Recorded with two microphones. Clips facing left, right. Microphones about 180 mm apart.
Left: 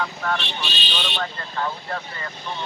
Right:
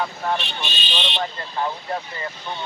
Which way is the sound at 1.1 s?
20° right (ahead or behind).